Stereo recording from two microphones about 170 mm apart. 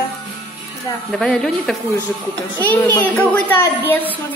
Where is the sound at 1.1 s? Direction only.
5° left (ahead or behind).